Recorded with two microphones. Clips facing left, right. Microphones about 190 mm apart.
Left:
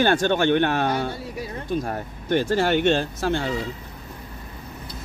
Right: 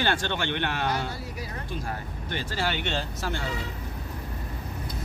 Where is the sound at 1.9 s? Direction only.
50° left (ahead or behind).